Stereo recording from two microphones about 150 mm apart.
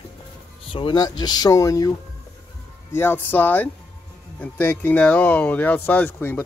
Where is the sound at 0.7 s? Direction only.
30° left (ahead or behind); by 6.4 s 15° left (ahead or behind).